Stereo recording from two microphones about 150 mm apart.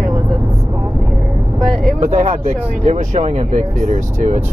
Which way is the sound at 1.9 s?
55° right (ahead or behind).